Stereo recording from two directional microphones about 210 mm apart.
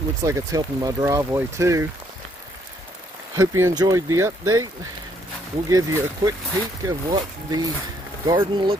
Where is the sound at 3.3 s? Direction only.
15° right (ahead or behind).